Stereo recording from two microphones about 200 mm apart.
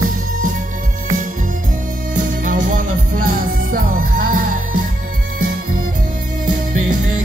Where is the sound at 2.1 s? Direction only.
40° right (ahead or behind).